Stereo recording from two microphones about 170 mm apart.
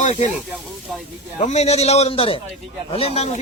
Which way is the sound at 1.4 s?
40° left (ahead or behind).